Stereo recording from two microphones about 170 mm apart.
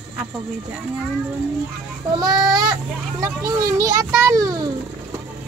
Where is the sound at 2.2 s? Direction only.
25° right (ahead or behind).